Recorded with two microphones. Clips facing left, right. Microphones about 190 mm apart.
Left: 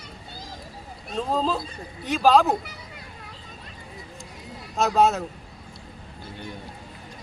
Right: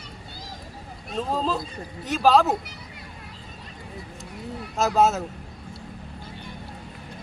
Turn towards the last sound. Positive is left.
turn(degrees=-5)  # may be behind; listen again after turning